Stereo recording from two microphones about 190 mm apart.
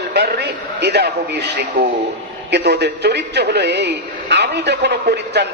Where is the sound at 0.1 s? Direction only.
60° right (ahead or behind).